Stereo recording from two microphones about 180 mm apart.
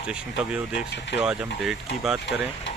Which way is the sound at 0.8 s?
75° left (ahead or behind).